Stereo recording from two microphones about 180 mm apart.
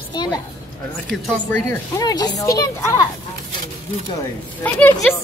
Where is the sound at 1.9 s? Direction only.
20° left (ahead or behind).